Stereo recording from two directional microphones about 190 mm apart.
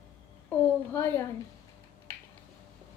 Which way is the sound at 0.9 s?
15° left (ahead or behind).